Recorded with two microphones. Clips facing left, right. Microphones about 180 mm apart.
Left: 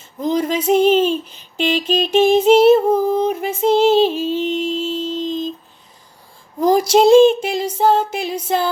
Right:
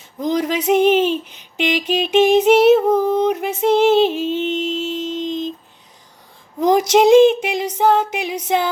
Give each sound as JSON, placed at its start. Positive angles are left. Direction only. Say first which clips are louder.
{"t": 0.4, "sound": "female singing", "louder": "even", "side_deg": -20}
{"t": 6.6, "sound": "female singing", "louder": "even", "side_deg": -20}